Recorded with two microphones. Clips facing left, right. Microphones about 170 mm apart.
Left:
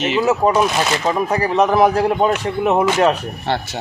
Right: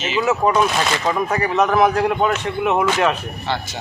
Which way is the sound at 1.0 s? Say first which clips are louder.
Left 2 dB; 25° left (ahead or behind).